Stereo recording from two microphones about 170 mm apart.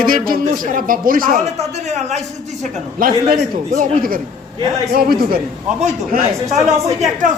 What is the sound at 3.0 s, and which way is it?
Speech, 55° right (ahead or behind).